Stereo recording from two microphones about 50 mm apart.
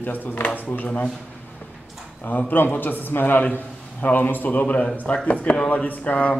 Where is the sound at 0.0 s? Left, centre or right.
Left.